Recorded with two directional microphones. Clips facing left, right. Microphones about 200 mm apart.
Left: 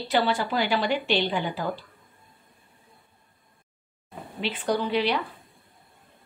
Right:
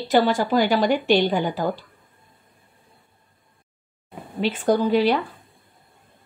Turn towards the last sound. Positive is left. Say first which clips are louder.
# right 6 dB
turn(degrees=-45)  # may be behind; listen again after turning